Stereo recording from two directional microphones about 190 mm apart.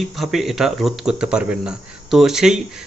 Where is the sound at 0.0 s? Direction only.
Centre (ahead or behind).